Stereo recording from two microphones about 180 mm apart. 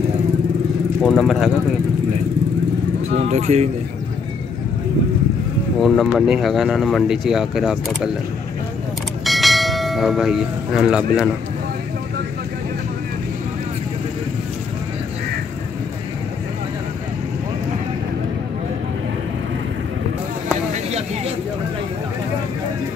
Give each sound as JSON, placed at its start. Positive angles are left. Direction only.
{"t": 1.0, "sound": "speech", "side_deg": 0}
{"t": 3.2, "sound": "speech", "side_deg": -40}
{"t": 5.8, "sound": "speech", "side_deg": 0}
{"t": 9.2, "sound": "church bell", "side_deg": 0}